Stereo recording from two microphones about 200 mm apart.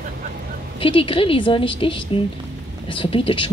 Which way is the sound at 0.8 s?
25° left (ahead or behind).